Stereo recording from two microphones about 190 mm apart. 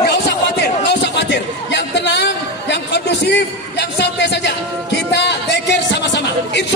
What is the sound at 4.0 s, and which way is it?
Music, 65° left (ahead or behind).